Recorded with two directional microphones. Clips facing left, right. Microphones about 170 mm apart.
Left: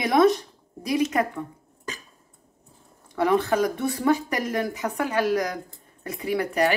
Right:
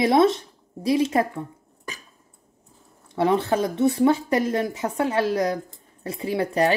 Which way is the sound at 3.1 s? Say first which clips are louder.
Right 1 dB; 25° right (ahead or behind).